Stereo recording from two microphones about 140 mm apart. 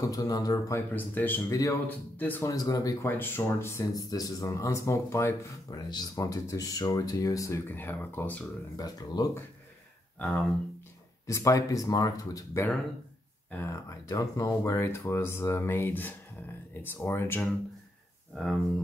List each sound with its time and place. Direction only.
0.0 s speech: 25° left (ahead or behind)
1.5 s speech: 25° left (ahead or behind)
1.9 s speech: 10° left (ahead or behind)
2.5 s speech: 25° left (ahead or behind)
8.7 s speech: 25° left (ahead or behind)
10.1 s speech: 5° left (ahead or behind)
11.2 s speech: 20° left (ahead or behind)